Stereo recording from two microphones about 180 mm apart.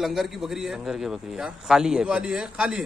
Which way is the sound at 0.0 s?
Centre (ahead or behind).